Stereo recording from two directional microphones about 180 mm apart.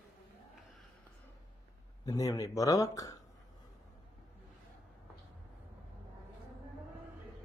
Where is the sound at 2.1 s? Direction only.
20° left (ahead or behind).